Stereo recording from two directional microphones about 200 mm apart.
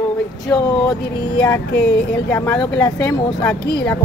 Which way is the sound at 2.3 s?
5° left (ahead or behind).